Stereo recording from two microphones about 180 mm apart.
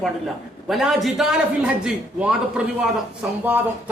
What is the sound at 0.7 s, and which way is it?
A man's voice, centre (ahead or behind).